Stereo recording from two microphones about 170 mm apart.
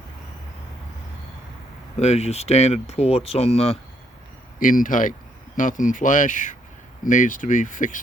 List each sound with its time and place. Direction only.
2.0 s speech: 40° left (ahead or behind)
4.6 s speech: 50° left (ahead or behind)